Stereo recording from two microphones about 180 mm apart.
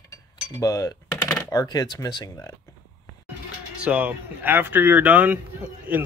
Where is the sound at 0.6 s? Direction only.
20° left (ahead or behind).